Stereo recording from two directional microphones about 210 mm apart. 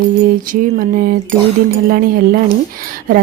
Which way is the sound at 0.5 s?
40° right (ahead or behind).